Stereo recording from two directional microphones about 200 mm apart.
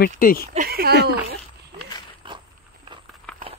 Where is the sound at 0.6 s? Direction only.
50° right (ahead or behind).